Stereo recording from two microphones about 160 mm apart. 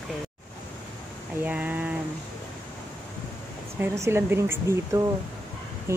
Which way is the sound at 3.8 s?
15° right (ahead or behind).